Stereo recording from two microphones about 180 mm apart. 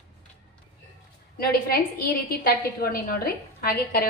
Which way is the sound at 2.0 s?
55° left (ahead or behind).